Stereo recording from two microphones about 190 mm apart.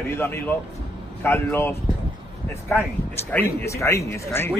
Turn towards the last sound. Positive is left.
turn(degrees=15)  # may be behind; listen again after turning